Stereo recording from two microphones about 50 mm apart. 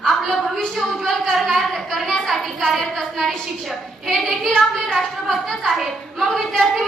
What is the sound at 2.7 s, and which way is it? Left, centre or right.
Speech, centre.